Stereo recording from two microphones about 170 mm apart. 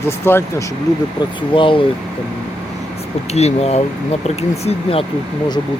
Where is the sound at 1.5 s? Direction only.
30° left (ahead or behind).